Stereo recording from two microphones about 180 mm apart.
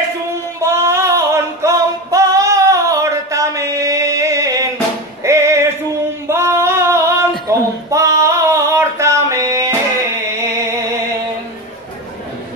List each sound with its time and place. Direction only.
0.6 s singing: 15° right (ahead or behind)
5.2 s music: 15° right (ahead or behind)
6.2 s female singing: 15° right (ahead or behind)